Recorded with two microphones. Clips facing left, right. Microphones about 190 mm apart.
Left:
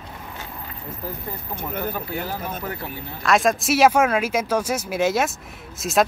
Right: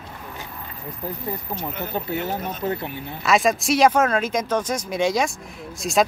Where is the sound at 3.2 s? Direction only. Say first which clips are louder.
Even; centre (ahead or behind).